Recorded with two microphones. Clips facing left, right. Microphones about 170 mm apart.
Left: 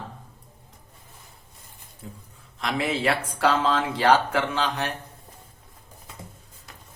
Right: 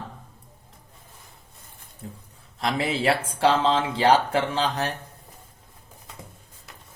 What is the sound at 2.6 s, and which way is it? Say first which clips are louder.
Speech: right 1 dB; 35° right (ahead or behind).